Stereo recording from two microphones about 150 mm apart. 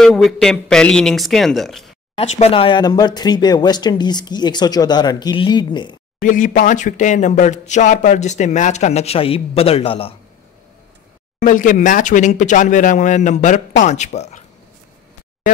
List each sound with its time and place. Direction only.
0.0 s speech: centre (ahead or behind)
2.1 s speech: 45° left (ahead or behind); by 5.9 s 30° left (ahead or behind)
6.2 s speech: 60° left (ahead or behind); by 10.1 s 40° left (ahead or behind)
11.4 s speech: 60° left (ahead or behind)
15.5 s a sound: 60° left (ahead or behind)